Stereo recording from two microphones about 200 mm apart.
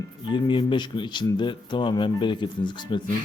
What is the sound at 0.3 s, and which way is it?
Speech, 25° left (ahead or behind).